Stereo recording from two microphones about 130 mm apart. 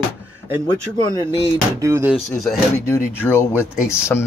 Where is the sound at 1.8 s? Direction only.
20° right (ahead or behind).